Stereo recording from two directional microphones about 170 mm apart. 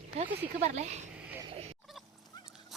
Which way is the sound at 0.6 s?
40° right (ahead or behind).